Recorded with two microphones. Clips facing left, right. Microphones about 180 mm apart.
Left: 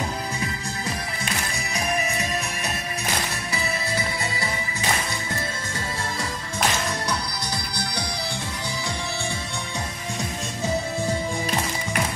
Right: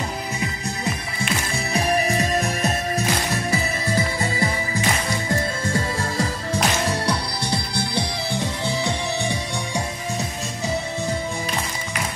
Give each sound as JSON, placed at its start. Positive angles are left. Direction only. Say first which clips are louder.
{"t": 1.7, "sound": "music", "louder": "right 6 dB", "side_deg": -35}
{"t": 3.9, "sound": "music", "louder": "right 5 dB", "side_deg": -40}